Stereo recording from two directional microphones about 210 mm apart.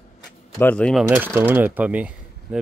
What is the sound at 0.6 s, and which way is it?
Speech, 5° left (ahead or behind).